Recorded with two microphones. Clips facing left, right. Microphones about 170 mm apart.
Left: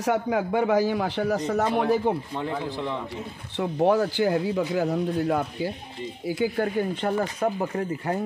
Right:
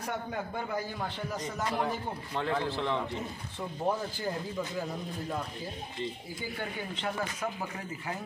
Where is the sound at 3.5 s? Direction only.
75° left (ahead or behind).